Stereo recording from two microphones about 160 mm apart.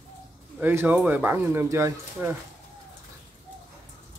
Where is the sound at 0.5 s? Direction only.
10° right (ahead or behind).